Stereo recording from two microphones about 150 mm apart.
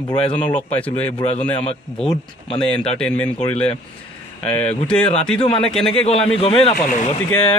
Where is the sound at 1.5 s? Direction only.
40° left (ahead or behind).